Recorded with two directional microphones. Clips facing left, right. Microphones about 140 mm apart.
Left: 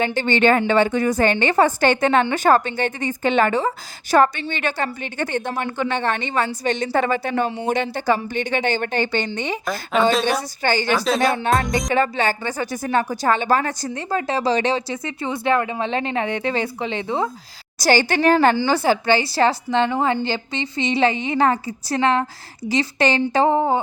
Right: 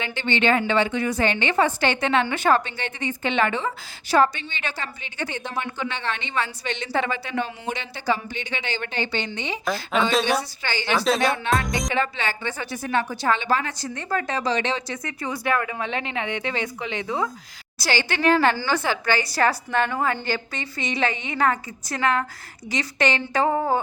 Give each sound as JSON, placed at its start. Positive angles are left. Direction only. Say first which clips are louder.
{"t": 0.0, "sound": "a woman's voice", "louder": "left 6 dB", "side_deg": 45}
{"t": 4.1, "sound": "a woman's voice", "louder": "left 3 dB", "side_deg": 55}
{"t": 9.9, "sound": "a woman's voice", "louder": "left 4 dB", "side_deg": 0}
{"t": 10.6, "sound": "a woman's voice", "louder": "left 7 dB", "side_deg": 45}
{"t": 10.9, "sound": "a woman's voice", "louder": "left 2 dB", "side_deg": 0}
{"t": 11.9, "sound": "a woman's voice", "louder": "left 6 dB", "side_deg": 45}
{"t": 13.9, "sound": "speech", "louder": "left 2 dB", "side_deg": 30}
{"t": 17.7, "sound": "a woman's voice", "louder": "left 7 dB", "side_deg": 45}
{"t": 18.5, "sound": "a woman's voice", "louder": "left 6 dB", "side_deg": 20}